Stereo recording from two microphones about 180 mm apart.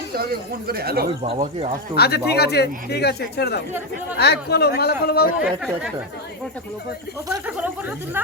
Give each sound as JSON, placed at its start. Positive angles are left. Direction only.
{"t": 0.7, "sound": "speech", "side_deg": -55}
{"t": 2.0, "sound": "speech", "side_deg": 65}
{"t": 5.4, "sound": "speech", "side_deg": -5}
{"t": 7.4, "sound": "speech", "side_deg": -10}